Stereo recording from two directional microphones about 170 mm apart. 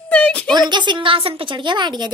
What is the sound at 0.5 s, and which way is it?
A woman's voice, 25° right (ahead or behind).